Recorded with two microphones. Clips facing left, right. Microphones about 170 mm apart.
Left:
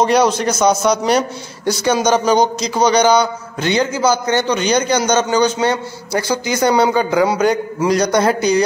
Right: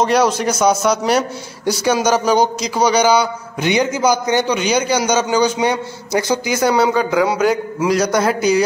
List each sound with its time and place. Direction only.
0.0 s a man's voice: 5° right (ahead or behind)
6.5 s a man's voice: 5° right (ahead or behind)